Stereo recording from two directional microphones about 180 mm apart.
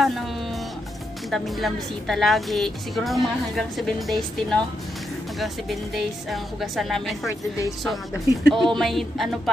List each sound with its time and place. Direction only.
1.3 s a woman's voice: centre (ahead or behind)
8.5 s a woman's voice: centre (ahead or behind)